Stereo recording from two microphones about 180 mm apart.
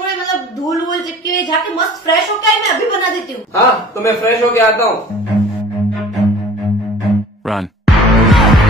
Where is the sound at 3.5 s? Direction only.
15° left (ahead or behind).